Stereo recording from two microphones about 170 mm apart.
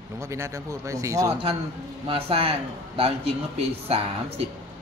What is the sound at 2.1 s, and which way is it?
A man's voice, 35° right (ahead or behind).